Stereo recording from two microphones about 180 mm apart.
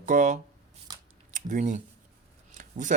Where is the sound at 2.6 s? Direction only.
45° right (ahead or behind).